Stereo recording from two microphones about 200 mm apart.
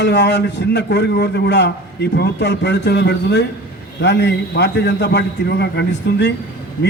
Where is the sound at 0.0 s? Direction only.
60° left (ahead or behind).